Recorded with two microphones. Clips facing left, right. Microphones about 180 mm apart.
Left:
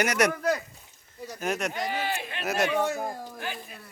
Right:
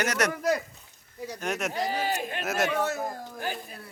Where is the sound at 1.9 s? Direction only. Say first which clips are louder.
Right 2 dB; 40° right (ahead or behind).